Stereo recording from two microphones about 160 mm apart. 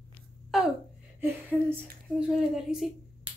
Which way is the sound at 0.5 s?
Centre (ahead or behind).